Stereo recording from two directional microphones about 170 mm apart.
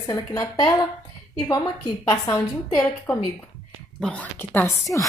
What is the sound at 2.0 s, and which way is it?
A woman's voice, 15° left (ahead or behind).